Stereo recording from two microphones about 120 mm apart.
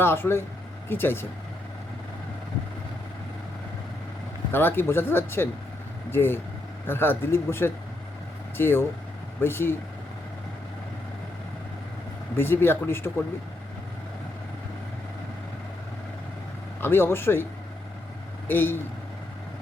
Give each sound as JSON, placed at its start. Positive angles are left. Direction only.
{"t": 0.0, "sound": "speech", "side_deg": 20}
{"t": 4.5, "sound": "speech", "side_deg": 20}
{"t": 12.4, "sound": "speech", "side_deg": 20}
{"t": 16.8, "sound": "speech", "side_deg": 20}
{"t": 18.4, "sound": "speech", "side_deg": 20}